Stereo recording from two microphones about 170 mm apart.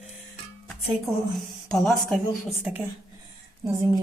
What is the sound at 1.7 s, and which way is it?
A woman's voice, centre (ahead or behind).